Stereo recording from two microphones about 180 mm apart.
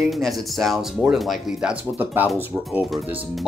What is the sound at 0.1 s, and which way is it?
Speech, centre (ahead or behind).